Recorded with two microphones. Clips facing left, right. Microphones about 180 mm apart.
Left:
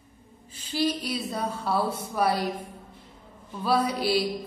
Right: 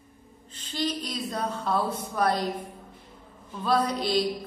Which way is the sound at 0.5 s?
10° left (ahead or behind).